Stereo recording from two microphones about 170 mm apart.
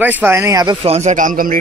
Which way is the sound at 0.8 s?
40° right (ahead or behind).